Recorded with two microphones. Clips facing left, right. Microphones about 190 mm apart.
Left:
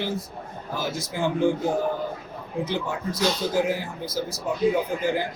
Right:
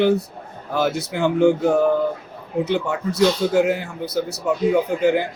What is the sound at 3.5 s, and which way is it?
Speech, 65° right (ahead or behind).